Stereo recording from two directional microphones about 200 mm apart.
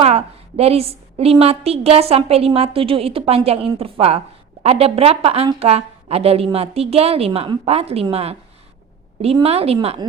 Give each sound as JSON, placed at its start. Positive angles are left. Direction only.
{"t": 0.0, "sound": "a woman's voice", "side_deg": -30}